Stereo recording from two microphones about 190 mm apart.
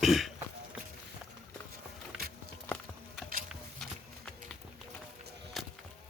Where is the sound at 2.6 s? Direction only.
5° left (ahead or behind).